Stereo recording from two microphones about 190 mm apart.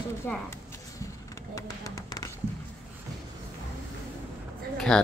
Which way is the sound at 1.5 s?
15° left (ahead or behind).